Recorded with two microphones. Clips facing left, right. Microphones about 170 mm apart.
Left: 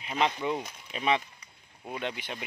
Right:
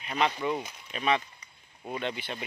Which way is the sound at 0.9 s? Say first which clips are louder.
Even; 20° left (ahead or behind).